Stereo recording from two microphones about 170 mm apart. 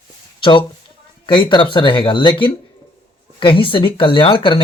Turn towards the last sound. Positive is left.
turn(degrees=30)  # may be behind; listen again after turning